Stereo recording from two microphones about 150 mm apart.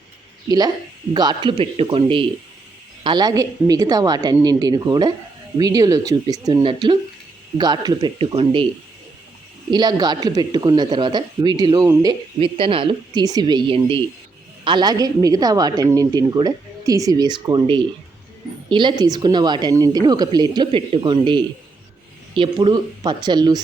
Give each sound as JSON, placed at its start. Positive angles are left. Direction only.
{"t": 0.4, "sound": "a man's voice", "side_deg": -25}
{"t": 9.7, "sound": "speech", "side_deg": -25}